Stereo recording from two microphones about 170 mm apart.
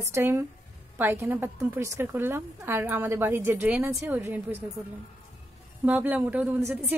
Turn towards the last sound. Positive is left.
turn(degrees=-10)  # may be behind; listen again after turning